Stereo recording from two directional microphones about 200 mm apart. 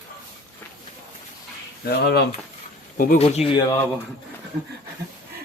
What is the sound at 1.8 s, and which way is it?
Speech, 55° left (ahead or behind).